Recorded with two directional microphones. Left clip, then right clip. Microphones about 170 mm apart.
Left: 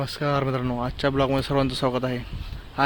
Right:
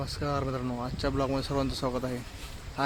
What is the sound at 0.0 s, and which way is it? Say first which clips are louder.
Speech: left 7 dB; 50° left (ahead or behind).